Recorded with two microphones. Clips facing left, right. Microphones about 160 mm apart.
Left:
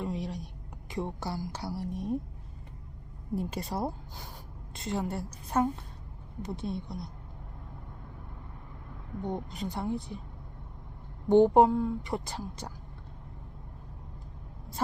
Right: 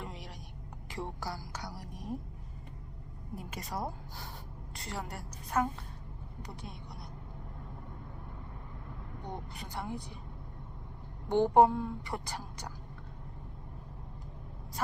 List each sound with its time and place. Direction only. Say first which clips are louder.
0.0 s a sound: left 10 dB; 20° left (ahead or behind)
0.9 s a woman's voice: left 5 dB; 20° left (ahead or behind)
3.3 s a woman's voice: left 7 dB; 30° left (ahead or behind)
9.2 s a woman's voice: left 9 dB; 20° left (ahead or behind)
11.3 s a woman's voice: left 4 dB; 20° left (ahead or behind)